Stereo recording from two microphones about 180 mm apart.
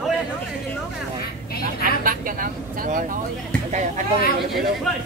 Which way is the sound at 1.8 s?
50° right (ahead or behind).